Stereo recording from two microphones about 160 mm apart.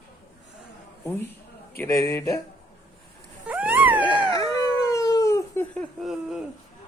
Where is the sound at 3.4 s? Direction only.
10° right (ahead or behind).